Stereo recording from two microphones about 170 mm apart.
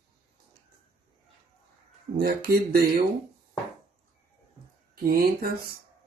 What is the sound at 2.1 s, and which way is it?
Speech, 60° right (ahead or behind).